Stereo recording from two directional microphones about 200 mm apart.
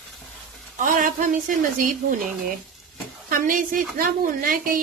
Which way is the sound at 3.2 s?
45° right (ahead or behind).